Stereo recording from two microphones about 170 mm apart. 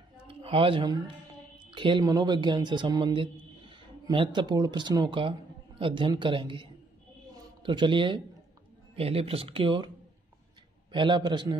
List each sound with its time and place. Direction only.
0.3 s speech: 30° right (ahead or behind)
10.9 s speech: 30° right (ahead or behind)